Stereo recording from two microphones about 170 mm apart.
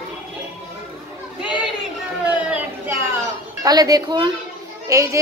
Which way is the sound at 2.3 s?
10° right (ahead or behind).